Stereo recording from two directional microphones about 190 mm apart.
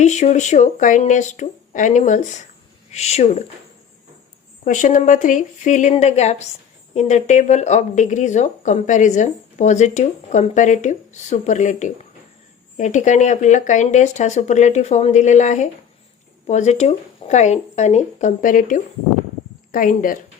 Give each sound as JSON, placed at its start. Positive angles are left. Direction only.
{"t": 0.0, "sound": "speech", "side_deg": 35}
{"t": 4.6, "sound": "speech", "side_deg": 40}